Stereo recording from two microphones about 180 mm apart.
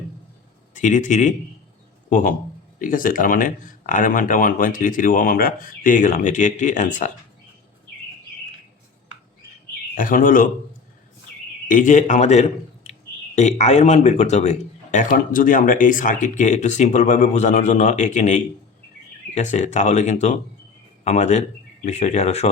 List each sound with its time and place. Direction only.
0.7 s speech: 45° left (ahead or behind)
10.0 s speech: 50° left (ahead or behind)
11.7 s a man's voice: 45° left (ahead or behind)